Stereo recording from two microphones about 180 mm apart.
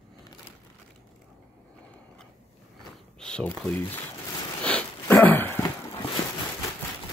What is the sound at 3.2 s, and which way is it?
Speech, 5° left (ahead or behind).